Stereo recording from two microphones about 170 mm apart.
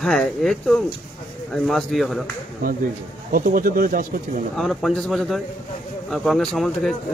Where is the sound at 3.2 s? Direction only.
55° right (ahead or behind).